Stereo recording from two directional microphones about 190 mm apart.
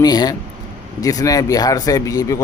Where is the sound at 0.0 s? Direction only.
20° left (ahead or behind).